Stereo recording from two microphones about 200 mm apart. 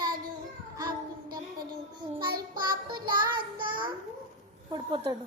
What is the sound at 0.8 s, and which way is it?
Child singing, 20° right (ahead or behind).